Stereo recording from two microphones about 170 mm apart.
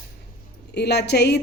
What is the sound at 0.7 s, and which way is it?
Speech, 80° left.